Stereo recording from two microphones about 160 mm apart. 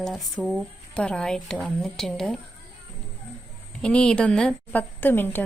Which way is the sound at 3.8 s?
5° left (ahead or behind).